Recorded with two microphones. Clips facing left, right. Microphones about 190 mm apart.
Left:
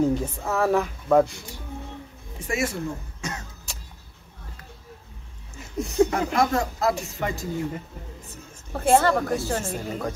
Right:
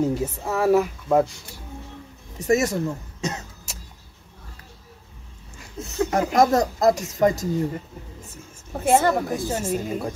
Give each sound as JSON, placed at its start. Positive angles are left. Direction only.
{"t": 0.0, "sound": "a woman's voice", "side_deg": -5}
{"t": 2.3, "sound": "speech", "side_deg": -40}
{"t": 3.2, "sound": "cough", "side_deg": -20}
{"t": 5.6, "sound": "a sound", "side_deg": 15}
{"t": 6.1, "sound": "speech", "side_deg": -40}
{"t": 8.7, "sound": "a woman's voice", "side_deg": -15}